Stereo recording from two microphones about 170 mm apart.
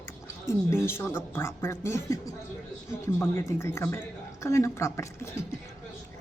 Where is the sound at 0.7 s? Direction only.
15° left (ahead or behind).